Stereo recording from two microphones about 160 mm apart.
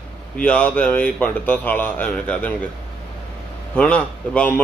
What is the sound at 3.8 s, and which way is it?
Speech, 10° left (ahead or behind).